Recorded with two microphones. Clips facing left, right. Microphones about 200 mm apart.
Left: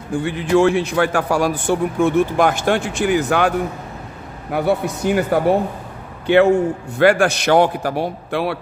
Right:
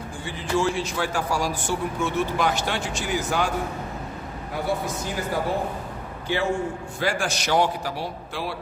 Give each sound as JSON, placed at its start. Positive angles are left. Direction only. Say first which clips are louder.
{"t": 0.2, "sound": "a man's voice", "louder": "left 9 dB", "side_deg": 60}